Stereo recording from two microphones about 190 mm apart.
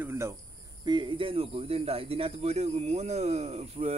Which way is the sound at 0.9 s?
25° right (ahead or behind).